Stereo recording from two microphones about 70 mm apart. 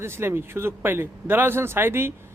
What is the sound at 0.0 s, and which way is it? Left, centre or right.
Speech, right.